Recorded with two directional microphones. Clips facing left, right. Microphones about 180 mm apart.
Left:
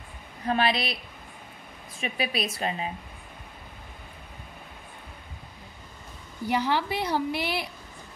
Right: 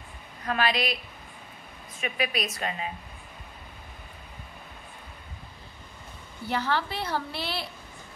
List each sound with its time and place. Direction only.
0.5 s a woman's voice: 25° left (ahead or behind)
2.0 s a woman's voice: 30° left (ahead or behind)
6.4 s a woman's voice: 15° left (ahead or behind)